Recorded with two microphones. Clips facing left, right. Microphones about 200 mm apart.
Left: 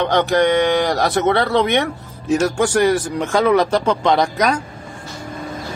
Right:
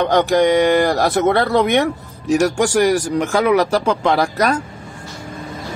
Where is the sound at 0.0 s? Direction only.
10° right (ahead or behind).